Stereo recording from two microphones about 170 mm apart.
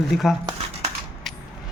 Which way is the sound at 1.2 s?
Centre (ahead or behind).